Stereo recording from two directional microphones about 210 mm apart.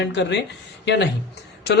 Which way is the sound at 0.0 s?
55° left (ahead or behind).